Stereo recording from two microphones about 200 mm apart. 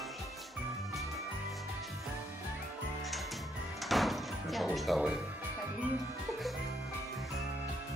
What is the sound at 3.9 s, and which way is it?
Music, centre (ahead or behind).